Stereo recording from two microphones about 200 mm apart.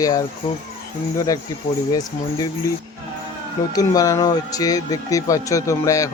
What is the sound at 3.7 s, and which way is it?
Speech, 15° left (ahead or behind).